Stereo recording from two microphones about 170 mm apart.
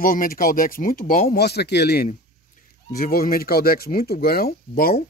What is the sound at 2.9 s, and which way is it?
Speech, 60° left (ahead or behind).